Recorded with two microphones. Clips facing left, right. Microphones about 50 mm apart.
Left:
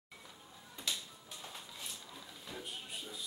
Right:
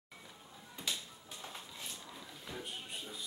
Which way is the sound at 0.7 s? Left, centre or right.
Centre.